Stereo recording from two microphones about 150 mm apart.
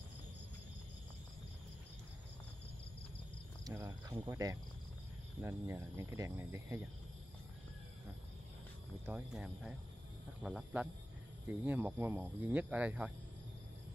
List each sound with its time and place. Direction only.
3.6 s cricket: 20° right (ahead or behind)
4.3 s speech: 20° right (ahead or behind)
9.0 s speech: 10° right (ahead or behind)